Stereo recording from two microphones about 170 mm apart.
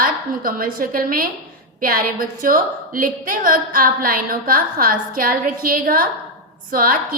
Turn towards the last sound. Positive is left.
turn(degrees=-60)  # may be behind; listen again after turning